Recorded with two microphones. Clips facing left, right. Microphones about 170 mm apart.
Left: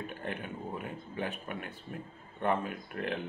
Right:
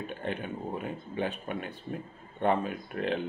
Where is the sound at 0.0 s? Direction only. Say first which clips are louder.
Right 4 dB; 25° right (ahead or behind).